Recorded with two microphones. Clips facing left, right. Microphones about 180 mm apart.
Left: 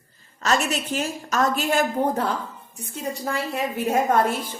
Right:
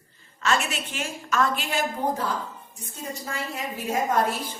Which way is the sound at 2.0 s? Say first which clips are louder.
Left 4 dB; 60° left (ahead or behind).